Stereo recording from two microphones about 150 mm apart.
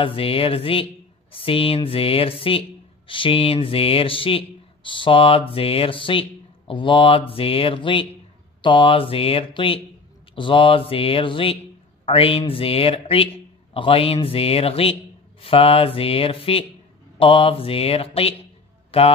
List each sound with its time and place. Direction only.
0.0 s a man's voice: 35° left (ahead or behind)